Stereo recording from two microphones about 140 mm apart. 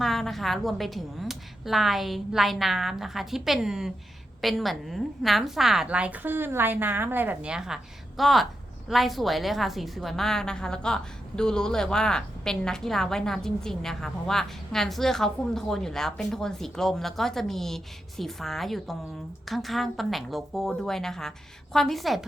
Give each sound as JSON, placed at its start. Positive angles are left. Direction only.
{"t": 0.0, "sound": "a woman's voice", "side_deg": 0}